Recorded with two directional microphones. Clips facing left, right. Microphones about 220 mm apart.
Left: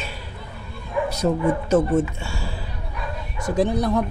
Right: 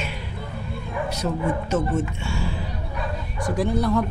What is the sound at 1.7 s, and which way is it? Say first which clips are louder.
Speech: left 5 dB; 35° left (ahead or behind).